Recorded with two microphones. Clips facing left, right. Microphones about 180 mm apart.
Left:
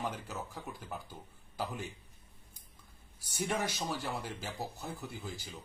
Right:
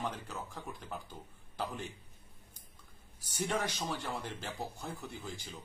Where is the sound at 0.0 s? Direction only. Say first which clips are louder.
Left 1 dB; 10° left (ahead or behind).